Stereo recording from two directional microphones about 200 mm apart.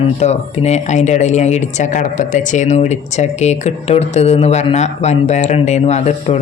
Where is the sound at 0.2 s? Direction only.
35° left (ahead or behind).